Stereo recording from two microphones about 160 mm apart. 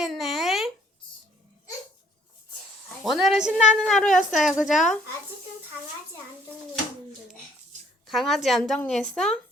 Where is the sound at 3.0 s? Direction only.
Centre (ahead or behind).